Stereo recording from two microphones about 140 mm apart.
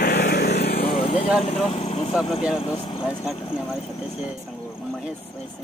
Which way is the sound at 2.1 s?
Centre (ahead or behind).